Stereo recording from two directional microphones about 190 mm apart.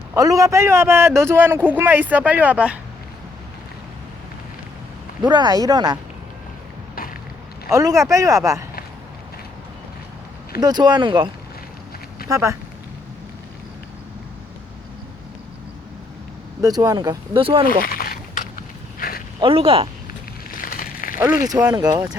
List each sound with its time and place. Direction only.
0.1 s a man's voice: 20° right (ahead or behind)
5.2 s speech: 20° right (ahead or behind)
7.7 s a man's voice: 15° right (ahead or behind)
10.6 s speech: 20° right (ahead or behind)
12.3 s a man's voice: 15° right (ahead or behind)
16.6 s speech: 20° right (ahead or behind)
17.7 s a sound: 50° left (ahead or behind)
19.4 s speech: 30° right (ahead or behind)
20.6 s a sound: 50° left (ahead or behind)
21.4 s speech: 20° right (ahead or behind)